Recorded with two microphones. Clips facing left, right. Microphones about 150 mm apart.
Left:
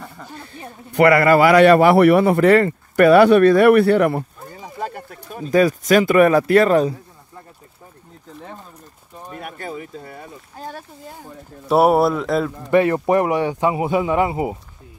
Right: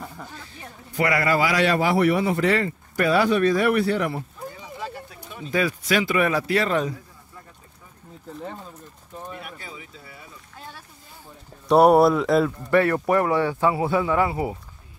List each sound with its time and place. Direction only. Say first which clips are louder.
0.9 s a man's voice: left 9 dB; 60° left (ahead or behind)
9.3 s speech: left 7 dB; 50° left (ahead or behind)
11.6 s speech: even; 5° left (ahead or behind)
12.7 s a man's voice: left 4 dB; 20° left (ahead or behind)